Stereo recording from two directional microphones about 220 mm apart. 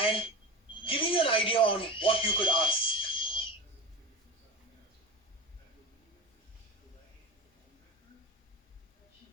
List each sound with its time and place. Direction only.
0.0 s speech: 25° left (ahead or behind)